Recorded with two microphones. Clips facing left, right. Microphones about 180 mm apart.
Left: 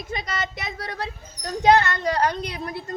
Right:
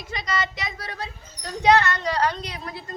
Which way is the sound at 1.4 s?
50° left (ahead or behind).